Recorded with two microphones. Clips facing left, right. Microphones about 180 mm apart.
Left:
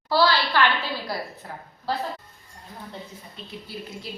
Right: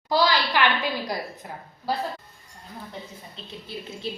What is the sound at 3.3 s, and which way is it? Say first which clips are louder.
Speech: even; 25° right (ahead or behind).